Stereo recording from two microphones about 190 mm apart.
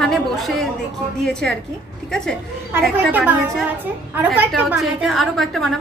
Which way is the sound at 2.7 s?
10° right (ahead or behind).